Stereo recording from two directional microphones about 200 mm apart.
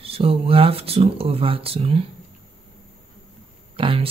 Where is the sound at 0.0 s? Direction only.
30° right (ahead or behind).